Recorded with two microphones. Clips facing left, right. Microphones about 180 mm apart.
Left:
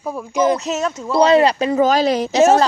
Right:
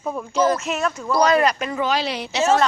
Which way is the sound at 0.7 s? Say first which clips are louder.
Left 2 dB; 25° left (ahead or behind).